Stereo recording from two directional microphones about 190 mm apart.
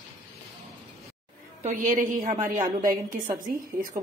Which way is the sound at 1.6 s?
40° right (ahead or behind).